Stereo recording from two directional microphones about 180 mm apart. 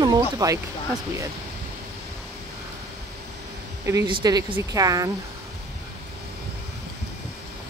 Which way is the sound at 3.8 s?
20° right (ahead or behind).